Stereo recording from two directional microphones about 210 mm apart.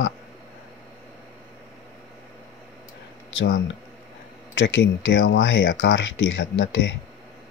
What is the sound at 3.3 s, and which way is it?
Speech, 65° left (ahead or behind).